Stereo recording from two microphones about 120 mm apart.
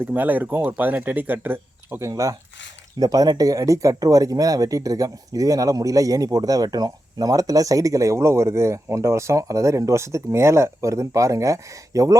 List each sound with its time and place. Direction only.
0.0 s speech: 15° right (ahead or behind)